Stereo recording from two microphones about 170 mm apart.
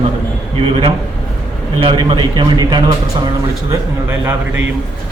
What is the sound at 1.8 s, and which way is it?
A man's voice, 30° right (ahead or behind).